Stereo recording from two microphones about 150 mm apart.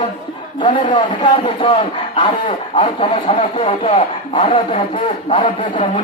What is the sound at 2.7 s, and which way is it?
Speech, 40° left (ahead or behind).